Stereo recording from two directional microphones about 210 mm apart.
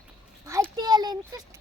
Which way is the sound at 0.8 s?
20° right (ahead or behind).